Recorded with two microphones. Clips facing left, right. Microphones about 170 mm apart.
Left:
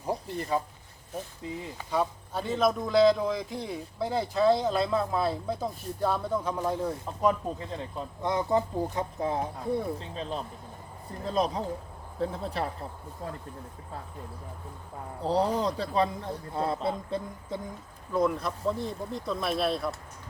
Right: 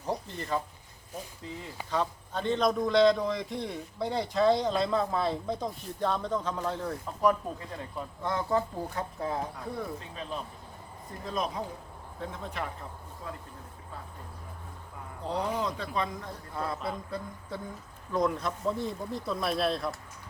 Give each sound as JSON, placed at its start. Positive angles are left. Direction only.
{"t": 0.5, "sound": "a man's voice", "side_deg": 10}
{"t": 15.2, "sound": "a man's voice", "side_deg": 35}
{"t": 18.1, "sound": "speech", "side_deg": 5}